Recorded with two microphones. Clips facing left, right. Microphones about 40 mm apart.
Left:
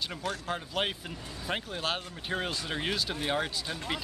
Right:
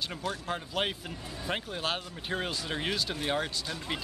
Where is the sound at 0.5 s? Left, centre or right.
Centre.